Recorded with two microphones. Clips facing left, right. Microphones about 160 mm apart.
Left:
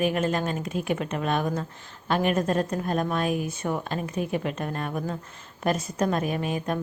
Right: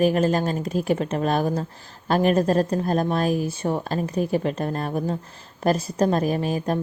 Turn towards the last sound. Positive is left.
turn(degrees=-35)  # may be behind; listen again after turning